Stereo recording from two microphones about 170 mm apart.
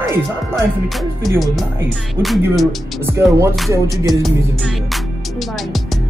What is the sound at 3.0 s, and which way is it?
Speech, 15° right (ahead or behind).